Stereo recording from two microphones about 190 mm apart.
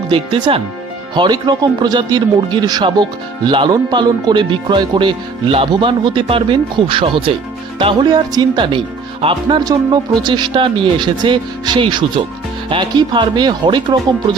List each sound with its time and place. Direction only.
0.1 s speech: 25° right (ahead or behind)